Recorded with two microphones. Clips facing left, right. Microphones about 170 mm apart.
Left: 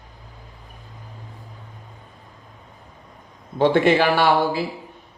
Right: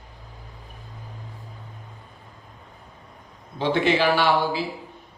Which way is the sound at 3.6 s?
55° left (ahead or behind).